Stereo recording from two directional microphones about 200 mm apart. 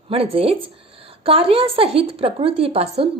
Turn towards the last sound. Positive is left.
turn(degrees=-30)  # may be behind; listen again after turning